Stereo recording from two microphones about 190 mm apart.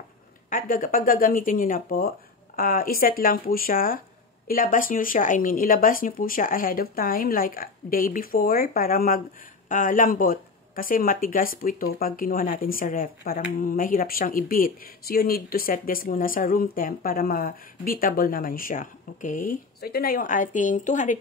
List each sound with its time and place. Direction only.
0.5 s speech: 45° left (ahead or behind)